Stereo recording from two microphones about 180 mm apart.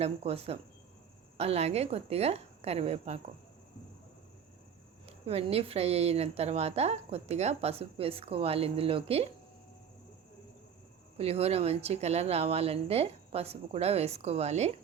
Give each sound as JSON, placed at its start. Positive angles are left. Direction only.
{"t": 0.0, "sound": "a woman's voice", "side_deg": -35}
{"t": 5.0, "sound": "a woman's voice", "side_deg": -35}
{"t": 11.2, "sound": "a woman's voice", "side_deg": -35}